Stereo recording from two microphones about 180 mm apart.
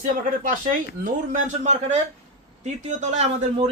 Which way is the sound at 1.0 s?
45° right (ahead or behind).